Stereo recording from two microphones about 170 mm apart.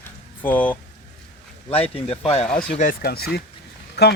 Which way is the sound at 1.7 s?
35° left (ahead or behind).